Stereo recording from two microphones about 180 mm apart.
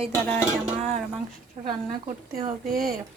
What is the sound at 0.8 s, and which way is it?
Speech, 5° left (ahead or behind).